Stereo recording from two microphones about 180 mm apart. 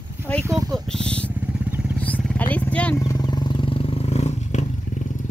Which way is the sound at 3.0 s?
20° left (ahead or behind).